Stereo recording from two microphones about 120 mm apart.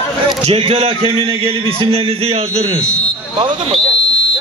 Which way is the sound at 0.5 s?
55° right (ahead or behind).